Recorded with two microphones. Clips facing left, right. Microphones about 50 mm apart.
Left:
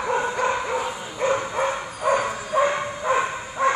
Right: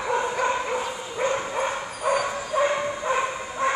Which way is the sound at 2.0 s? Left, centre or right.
Left.